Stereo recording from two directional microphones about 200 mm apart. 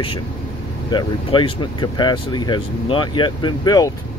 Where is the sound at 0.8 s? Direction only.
25° left (ahead or behind).